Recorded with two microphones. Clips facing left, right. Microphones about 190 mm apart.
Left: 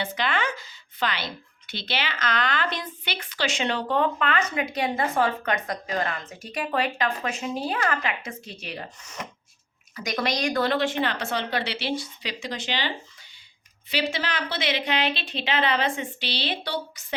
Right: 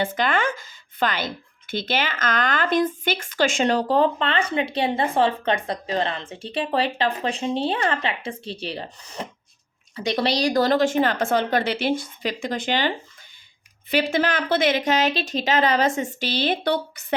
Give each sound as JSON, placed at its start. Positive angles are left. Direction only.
{"t": 0.0, "sound": "speech", "side_deg": -50}
{"t": 13.9, "sound": "speech", "side_deg": -50}